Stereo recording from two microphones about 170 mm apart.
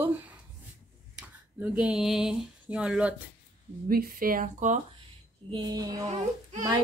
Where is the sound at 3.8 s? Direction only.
60° right (ahead or behind).